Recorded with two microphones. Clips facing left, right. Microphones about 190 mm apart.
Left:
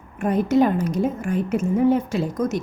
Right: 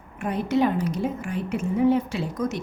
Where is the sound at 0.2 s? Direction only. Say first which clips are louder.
Left 5 dB; 45° left (ahead or behind).